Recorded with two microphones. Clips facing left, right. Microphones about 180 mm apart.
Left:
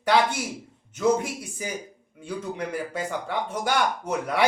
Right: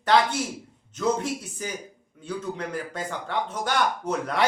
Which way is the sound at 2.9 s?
10° left (ahead or behind).